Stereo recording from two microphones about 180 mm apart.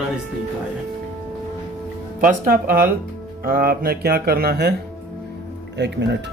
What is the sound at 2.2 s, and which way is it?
Speech, 50° right (ahead or behind).